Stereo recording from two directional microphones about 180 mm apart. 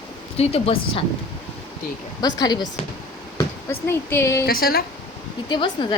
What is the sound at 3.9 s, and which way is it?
Speech, 15° left (ahead or behind).